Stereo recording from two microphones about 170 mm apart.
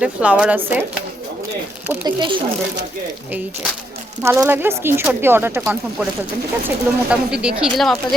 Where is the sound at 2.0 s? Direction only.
25° right (ahead or behind).